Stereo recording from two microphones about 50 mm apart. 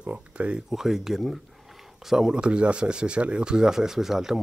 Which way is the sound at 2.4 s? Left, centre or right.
Right.